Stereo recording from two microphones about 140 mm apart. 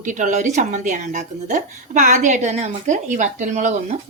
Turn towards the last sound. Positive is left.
turn(degrees=-60)  # may be behind; listen again after turning